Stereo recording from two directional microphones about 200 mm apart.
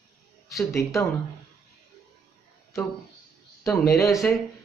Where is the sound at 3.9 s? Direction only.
15° left (ahead or behind).